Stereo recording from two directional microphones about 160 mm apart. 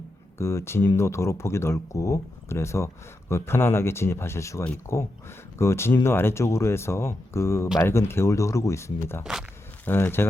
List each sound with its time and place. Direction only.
0.3 s speech: 15° left (ahead or behind)